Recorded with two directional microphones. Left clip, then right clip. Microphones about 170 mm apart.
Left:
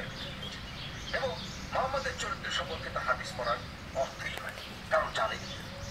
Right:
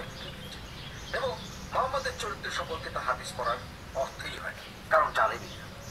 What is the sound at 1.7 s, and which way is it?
Speech, 30° right (ahead or behind).